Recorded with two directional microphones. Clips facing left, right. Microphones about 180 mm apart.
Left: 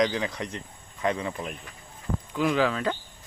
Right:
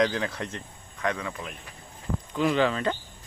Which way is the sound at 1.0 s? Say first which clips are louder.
Left 2 dB; 25° left (ahead or behind).